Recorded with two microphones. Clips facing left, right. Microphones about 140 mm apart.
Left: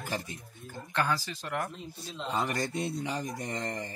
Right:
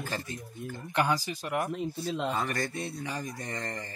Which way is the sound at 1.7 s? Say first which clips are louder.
Right 9 dB; 60° right (ahead or behind).